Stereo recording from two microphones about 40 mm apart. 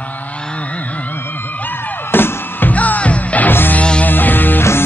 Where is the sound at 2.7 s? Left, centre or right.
Left.